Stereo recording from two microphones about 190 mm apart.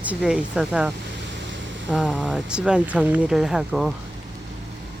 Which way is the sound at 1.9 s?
5° right (ahead or behind).